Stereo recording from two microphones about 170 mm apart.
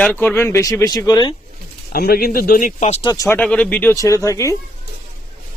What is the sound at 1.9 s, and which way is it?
Speech, 60° left (ahead or behind).